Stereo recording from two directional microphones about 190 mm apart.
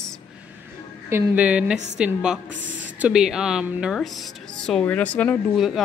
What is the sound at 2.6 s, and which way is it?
Speech, 80° right.